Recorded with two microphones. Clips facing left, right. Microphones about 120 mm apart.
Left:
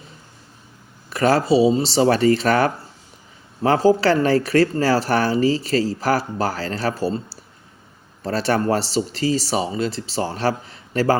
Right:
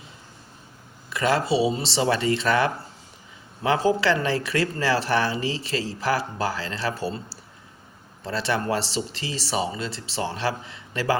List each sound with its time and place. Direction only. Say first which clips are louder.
1.1 s speech: left 6 dB; 40° left (ahead or behind)